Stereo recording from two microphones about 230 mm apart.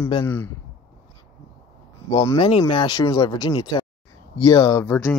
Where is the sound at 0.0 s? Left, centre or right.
Centre.